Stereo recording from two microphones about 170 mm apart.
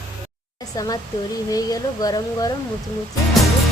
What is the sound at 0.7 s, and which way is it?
Speech, 20° left (ahead or behind).